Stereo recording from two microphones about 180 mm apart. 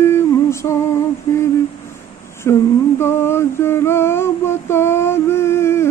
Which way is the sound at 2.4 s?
15° left (ahead or behind).